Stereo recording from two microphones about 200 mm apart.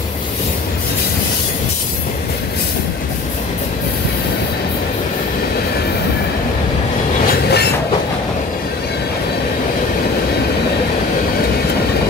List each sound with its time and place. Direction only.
7.4 s train: 55° left (ahead or behind)